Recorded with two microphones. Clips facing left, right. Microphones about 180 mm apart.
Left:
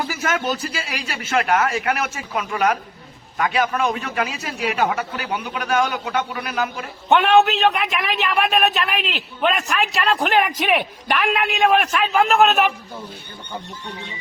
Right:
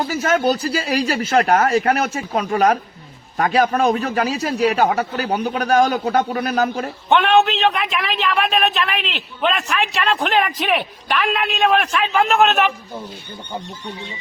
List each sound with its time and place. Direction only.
0.0 s a man's voice: 30° right (ahead or behind)
7.1 s a man's voice: 5° left (ahead or behind)